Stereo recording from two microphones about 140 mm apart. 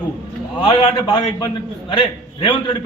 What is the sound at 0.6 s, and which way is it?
A man's voice, 35° left (ahead or behind).